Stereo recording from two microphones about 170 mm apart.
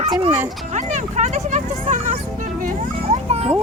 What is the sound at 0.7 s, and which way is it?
Speech, 45° right (ahead or behind).